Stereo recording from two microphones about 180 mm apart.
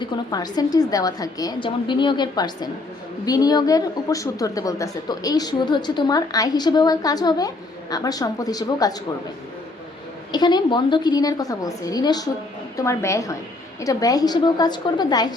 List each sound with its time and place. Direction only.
0.0 s a woman's voice: 25° left (ahead or behind)
10.3 s a woman's voice: 25° left (ahead or behind)